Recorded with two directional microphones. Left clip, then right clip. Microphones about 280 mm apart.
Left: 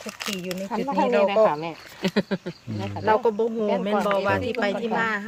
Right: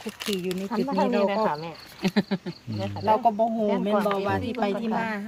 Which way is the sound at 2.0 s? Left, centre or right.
Centre.